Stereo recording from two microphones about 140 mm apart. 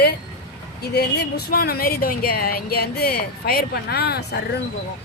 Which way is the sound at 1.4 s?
90° left.